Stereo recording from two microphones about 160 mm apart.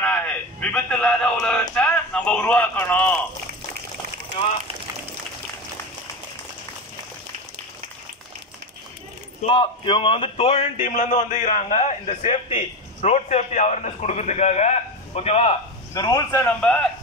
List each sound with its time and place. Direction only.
0.0 s a sound: 10° left (ahead or behind)
9.4 s a man's voice: 30° left (ahead or behind)
15.9 s a man's voice: 25° left (ahead or behind)